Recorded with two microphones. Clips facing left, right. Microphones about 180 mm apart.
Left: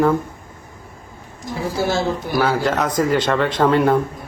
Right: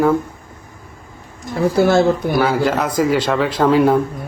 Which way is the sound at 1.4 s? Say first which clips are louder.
Right 7 dB; 55° right (ahead or behind).